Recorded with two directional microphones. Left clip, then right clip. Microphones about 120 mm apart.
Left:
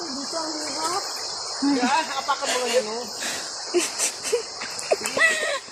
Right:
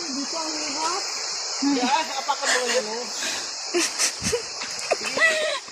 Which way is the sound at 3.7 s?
25° left (ahead or behind).